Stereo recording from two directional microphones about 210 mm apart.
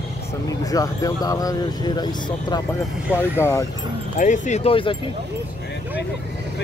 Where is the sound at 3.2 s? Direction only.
10° left (ahead or behind).